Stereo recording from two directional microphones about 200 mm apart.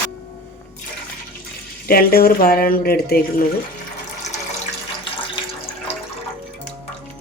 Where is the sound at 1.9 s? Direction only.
50° left (ahead or behind).